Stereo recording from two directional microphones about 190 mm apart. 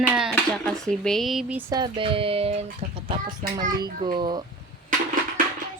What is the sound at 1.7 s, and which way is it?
Speech, 25° right (ahead or behind).